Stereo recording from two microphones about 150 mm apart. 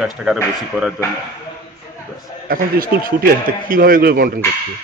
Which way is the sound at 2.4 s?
75° right (ahead or behind).